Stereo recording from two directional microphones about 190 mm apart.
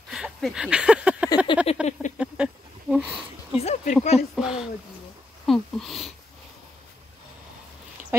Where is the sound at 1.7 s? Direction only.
30° left (ahead or behind).